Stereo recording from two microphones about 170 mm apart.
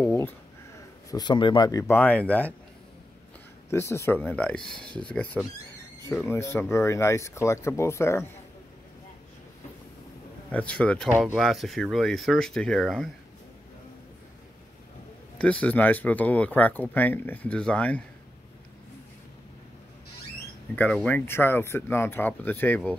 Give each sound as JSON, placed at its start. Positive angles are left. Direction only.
{"t": 0.0, "sound": "a sound", "side_deg": 10}
{"t": 1.1, "sound": "speech", "side_deg": 25}
{"t": 3.7, "sound": "speech", "side_deg": 15}
{"t": 10.5, "sound": "speech", "side_deg": 5}
{"t": 15.3, "sound": "speech", "side_deg": 5}
{"t": 20.7, "sound": "speech", "side_deg": 5}